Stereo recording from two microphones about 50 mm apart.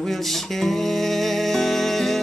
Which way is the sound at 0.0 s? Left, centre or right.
Centre.